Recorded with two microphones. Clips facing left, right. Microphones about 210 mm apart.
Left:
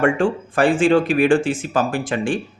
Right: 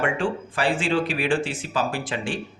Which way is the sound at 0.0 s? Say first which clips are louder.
Left 7 dB; 50° left (ahead or behind).